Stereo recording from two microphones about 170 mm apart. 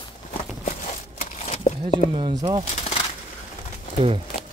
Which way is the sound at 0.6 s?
45° left (ahead or behind).